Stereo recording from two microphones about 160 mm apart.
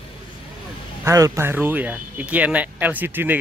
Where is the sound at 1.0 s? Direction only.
20° right (ahead or behind).